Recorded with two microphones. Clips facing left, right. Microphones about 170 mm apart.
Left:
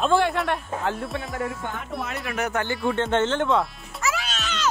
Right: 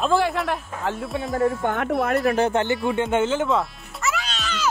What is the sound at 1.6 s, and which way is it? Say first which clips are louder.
Speech: right 9 dB; 60° right (ahead or behind).